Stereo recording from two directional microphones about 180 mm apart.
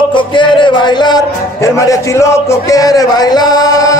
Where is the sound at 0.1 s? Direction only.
25° left (ahead or behind).